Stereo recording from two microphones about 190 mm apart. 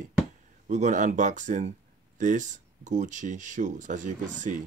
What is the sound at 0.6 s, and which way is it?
Speech, 40° right (ahead or behind).